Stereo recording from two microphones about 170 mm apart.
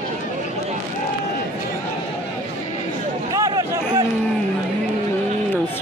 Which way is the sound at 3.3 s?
20° right (ahead or behind).